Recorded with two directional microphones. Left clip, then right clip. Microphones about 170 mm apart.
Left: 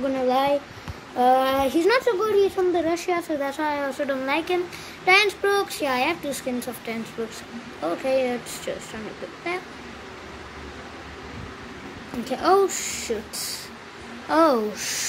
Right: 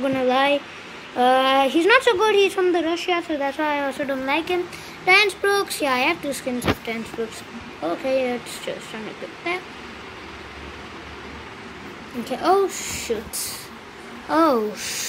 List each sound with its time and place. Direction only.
0.0 s speech: 5° right (ahead or behind)
2.6 s a woman's voice: 20° right (ahead or behind)
2.9 s speech: 10° left (ahead or behind)
7.8 s speech: 5° right (ahead or behind)
12.3 s speech: centre (ahead or behind)
14.3 s speech: centre (ahead or behind)